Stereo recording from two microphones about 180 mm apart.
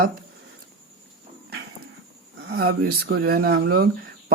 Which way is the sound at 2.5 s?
60° right (ahead or behind).